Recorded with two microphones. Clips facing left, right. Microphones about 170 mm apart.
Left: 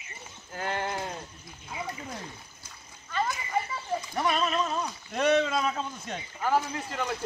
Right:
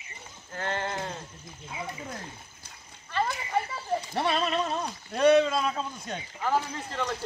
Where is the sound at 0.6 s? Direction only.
10° left (ahead or behind).